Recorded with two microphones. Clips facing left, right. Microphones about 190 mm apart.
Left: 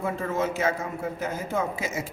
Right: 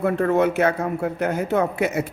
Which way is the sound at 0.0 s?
65° right (ahead or behind).